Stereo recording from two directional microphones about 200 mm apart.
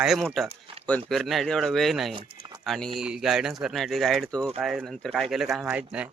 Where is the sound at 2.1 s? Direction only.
25° right (ahead or behind).